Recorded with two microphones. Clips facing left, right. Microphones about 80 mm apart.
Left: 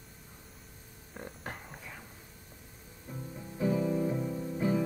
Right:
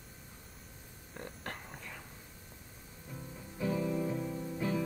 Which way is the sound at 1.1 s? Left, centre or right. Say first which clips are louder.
Left 1 dB; centre.